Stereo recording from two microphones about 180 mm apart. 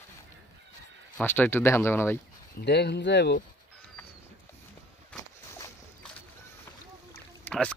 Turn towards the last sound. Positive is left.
turn(degrees=5)  # may be behind; listen again after turning